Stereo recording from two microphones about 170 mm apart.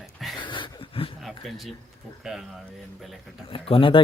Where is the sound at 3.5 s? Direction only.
30° left (ahead or behind).